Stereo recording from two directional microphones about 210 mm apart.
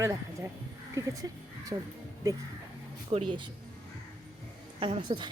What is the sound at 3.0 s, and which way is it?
Speech, 25° right (ahead or behind).